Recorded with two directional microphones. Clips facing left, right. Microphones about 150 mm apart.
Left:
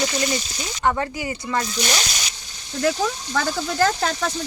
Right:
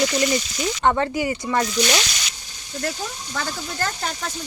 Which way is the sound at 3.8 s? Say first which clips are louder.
Left 7 dB; 90° left.